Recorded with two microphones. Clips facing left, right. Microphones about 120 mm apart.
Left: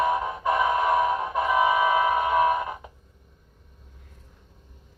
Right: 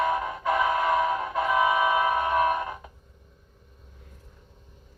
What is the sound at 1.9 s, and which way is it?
Train, 20° left (ahead or behind).